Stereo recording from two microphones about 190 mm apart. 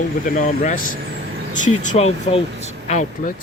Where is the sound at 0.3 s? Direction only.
45° left (ahead or behind).